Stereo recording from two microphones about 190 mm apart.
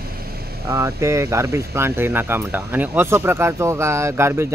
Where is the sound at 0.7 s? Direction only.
15° right (ahead or behind).